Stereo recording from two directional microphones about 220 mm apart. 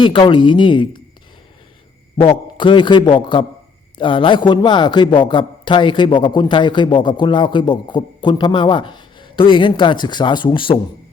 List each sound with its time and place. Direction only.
0.0 s a man's voice: 20° left (ahead or behind)
2.2 s a man's voice: 20° left (ahead or behind)